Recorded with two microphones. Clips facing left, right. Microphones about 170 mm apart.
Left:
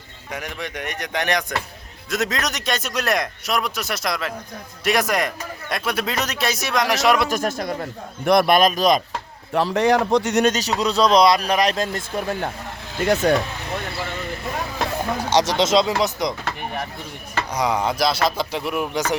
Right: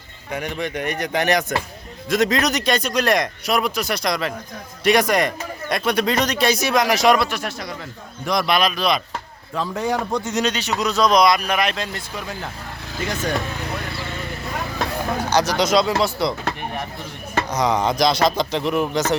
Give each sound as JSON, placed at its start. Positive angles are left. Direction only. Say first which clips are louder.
{"t": 0.3, "sound": "speech", "louder": "right 5 dB", "side_deg": 0}
{"t": 7.3, "sound": "a man's voice", "louder": "left 5 dB", "side_deg": 45}
{"t": 9.5, "sound": "speech", "louder": "left 5 dB", "side_deg": 75}
{"t": 10.4, "sound": "a man's voice", "louder": "left 2 dB", "side_deg": 40}
{"t": 15.3, "sound": "speech", "louder": "left 1 dB", "side_deg": 25}
{"t": 17.5, "sound": "speech", "louder": "right 1 dB", "side_deg": 10}